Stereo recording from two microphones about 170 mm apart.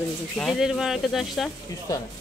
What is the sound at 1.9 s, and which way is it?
Speech, 20° left (ahead or behind).